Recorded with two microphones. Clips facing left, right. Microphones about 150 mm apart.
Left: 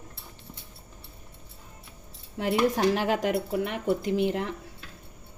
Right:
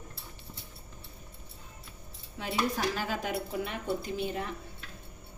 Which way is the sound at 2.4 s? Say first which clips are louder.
Left 7 dB; 75° left (ahead or behind).